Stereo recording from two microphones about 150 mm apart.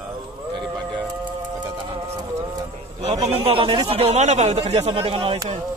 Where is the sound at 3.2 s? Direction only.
40° right (ahead or behind).